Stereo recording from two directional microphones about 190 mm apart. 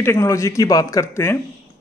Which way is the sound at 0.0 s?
15° left (ahead or behind).